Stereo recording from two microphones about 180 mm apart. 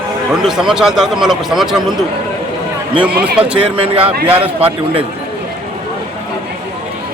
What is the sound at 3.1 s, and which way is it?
Speech, 60° right (ahead or behind).